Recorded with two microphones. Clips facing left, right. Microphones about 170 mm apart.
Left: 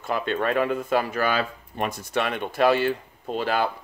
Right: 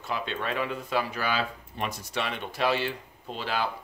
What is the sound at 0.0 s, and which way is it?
Speech, 50° left (ahead or behind).